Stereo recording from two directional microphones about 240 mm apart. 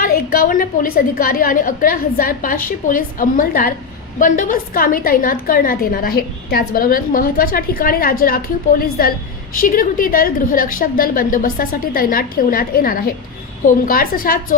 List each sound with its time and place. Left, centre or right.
0.0 s a woman's voice: left